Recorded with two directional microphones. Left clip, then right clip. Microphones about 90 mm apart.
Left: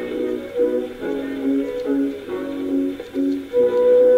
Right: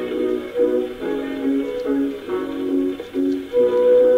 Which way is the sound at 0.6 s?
25° right (ahead or behind).